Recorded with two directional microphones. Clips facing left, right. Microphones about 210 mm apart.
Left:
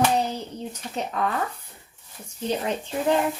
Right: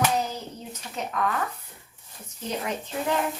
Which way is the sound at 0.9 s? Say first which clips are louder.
Left 1 dB; 30° left (ahead or behind).